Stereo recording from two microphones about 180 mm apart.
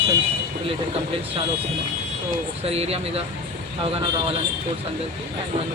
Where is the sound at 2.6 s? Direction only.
35° right (ahead or behind).